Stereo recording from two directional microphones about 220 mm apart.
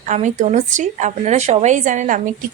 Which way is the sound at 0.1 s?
30° right (ahead or behind).